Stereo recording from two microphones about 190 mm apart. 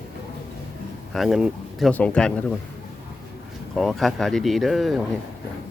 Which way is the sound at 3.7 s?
Centre (ahead or behind).